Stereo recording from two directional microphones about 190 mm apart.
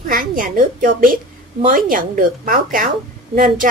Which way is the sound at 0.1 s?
45° right (ahead or behind).